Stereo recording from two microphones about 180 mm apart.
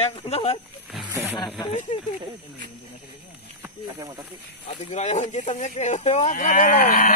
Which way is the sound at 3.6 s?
10° right (ahead or behind).